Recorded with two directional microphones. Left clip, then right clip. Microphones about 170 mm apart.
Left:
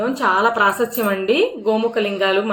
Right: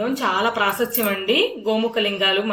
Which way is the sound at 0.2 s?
35° left (ahead or behind).